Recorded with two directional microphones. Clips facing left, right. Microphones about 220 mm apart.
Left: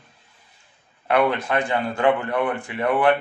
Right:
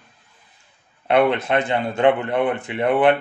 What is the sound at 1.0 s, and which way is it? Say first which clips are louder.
Speech: right 3 dB; 25° right (ahead or behind).